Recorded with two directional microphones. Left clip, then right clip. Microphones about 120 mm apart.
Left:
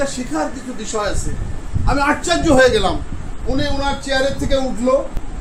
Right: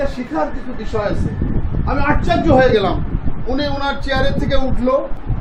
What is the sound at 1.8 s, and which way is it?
Speech, 30° left (ahead or behind).